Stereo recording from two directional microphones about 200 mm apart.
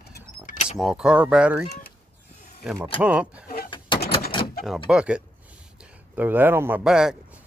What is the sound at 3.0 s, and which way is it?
Speech, 5° right (ahead or behind).